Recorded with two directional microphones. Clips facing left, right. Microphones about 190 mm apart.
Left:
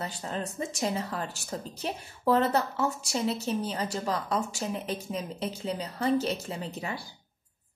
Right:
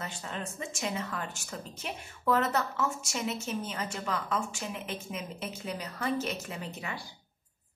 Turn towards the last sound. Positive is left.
turn(degrees=35)  # may be behind; listen again after turning